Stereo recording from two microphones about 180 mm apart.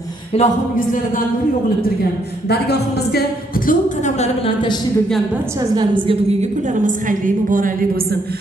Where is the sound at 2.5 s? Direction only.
65° left (ahead or behind).